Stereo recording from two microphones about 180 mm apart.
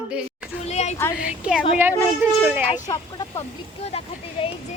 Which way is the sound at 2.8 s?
20° left (ahead or behind).